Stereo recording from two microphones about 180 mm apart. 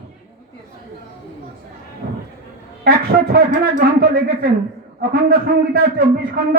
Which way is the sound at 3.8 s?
60° right (ahead or behind).